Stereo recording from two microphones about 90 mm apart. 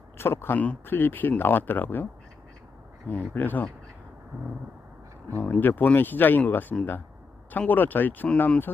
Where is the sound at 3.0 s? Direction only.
20° left (ahead or behind).